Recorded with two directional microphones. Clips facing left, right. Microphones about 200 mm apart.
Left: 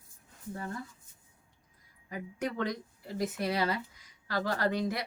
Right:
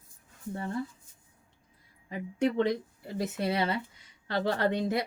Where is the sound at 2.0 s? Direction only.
25° right (ahead or behind).